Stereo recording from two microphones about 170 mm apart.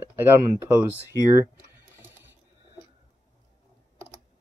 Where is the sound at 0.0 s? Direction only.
15° right (ahead or behind).